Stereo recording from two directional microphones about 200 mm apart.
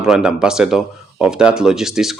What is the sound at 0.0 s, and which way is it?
Speech, 5° right (ahead or behind).